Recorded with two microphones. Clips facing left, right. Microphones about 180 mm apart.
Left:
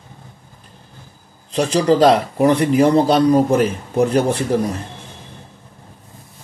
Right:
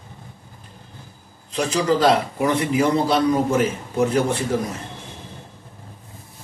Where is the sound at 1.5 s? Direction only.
35° left (ahead or behind).